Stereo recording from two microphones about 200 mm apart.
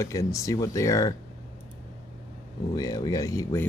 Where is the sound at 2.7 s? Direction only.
15° left (ahead or behind).